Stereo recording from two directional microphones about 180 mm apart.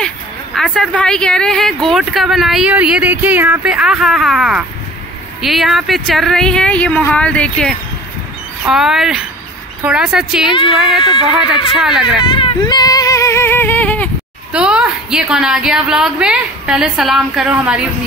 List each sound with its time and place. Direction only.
0.6 s speech: 5° left (ahead or behind)
11.0 s speech: 25° left (ahead or behind)
11.7 s speech: 5° right (ahead or behind)
12.2 s speech: 30° left (ahead or behind); by 14.1 s 10° left (ahead or behind)
14.5 s speech: 5° right (ahead or behind)